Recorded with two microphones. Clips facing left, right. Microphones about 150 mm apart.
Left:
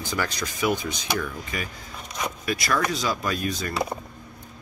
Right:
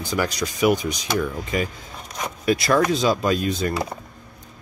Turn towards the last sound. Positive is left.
turn(degrees=-25)  # may be behind; listen again after turning